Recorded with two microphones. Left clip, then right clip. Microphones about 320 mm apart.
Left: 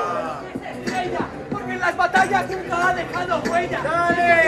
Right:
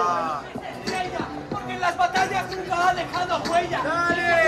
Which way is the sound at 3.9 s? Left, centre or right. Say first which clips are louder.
Left 5 dB; left.